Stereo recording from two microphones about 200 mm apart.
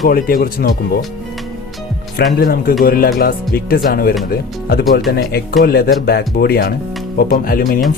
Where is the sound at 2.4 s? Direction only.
50° left (ahead or behind).